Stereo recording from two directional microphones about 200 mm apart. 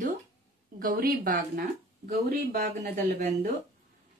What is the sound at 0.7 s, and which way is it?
Speech, 45° right (ahead or behind).